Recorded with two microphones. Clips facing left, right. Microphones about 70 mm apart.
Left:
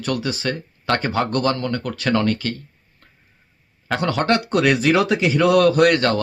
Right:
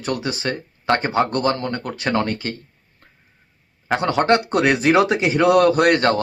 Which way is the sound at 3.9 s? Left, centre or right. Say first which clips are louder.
Right 2 dB; right.